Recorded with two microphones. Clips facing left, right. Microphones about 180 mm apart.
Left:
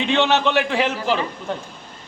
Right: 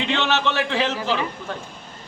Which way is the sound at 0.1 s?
15° left (ahead or behind).